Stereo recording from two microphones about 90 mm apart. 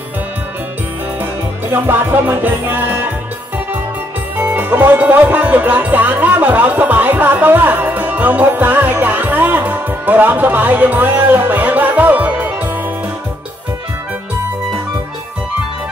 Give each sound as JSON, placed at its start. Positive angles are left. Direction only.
{"t": 1.7, "sound": "music", "side_deg": -25}
{"t": 4.4, "sound": "music", "side_deg": -20}